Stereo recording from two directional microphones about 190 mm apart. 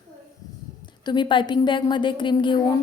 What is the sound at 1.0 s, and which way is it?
A woman's voice, 25° left (ahead or behind).